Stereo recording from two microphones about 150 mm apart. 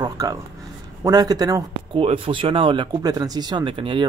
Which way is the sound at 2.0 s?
40° right (ahead or behind).